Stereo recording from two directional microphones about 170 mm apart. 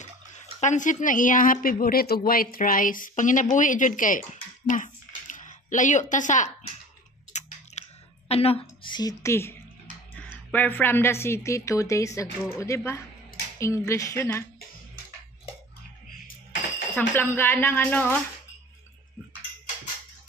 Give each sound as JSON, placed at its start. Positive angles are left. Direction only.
{"t": 0.0, "sound": "speech", "side_deg": 45}
{"t": 7.3, "sound": "chewing", "side_deg": 40}
{"t": 7.7, "sound": "a sound", "side_deg": 40}
{"t": 8.3, "sound": "a woman's voice", "side_deg": 35}
{"t": 16.9, "sound": "speech", "side_deg": 15}